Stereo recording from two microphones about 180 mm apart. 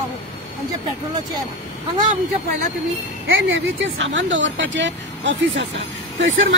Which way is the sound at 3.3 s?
90° right.